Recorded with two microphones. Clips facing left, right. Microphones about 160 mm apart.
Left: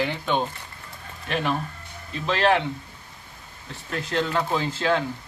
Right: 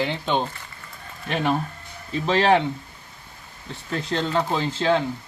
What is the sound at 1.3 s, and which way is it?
Speech, 35° right (ahead or behind).